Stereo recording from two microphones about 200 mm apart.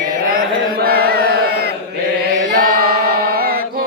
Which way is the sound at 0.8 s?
50° right (ahead or behind).